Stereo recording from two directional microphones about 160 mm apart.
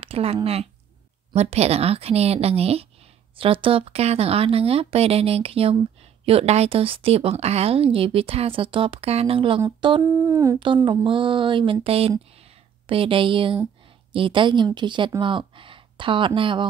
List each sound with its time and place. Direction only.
0.0 s a woman's voice: 35° right (ahead or behind)
10.1 s a woman's voice: 20° right (ahead or behind)